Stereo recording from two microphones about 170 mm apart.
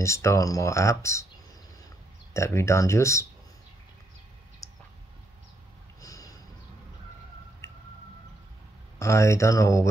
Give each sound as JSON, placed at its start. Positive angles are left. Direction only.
{"t": 0.0, "sound": "speech", "side_deg": 15}
{"t": 2.3, "sound": "speech", "side_deg": 15}
{"t": 5.9, "sound": "a sound", "side_deg": 20}
{"t": 7.6, "sound": "squish", "side_deg": 15}
{"t": 9.0, "sound": "speech", "side_deg": 15}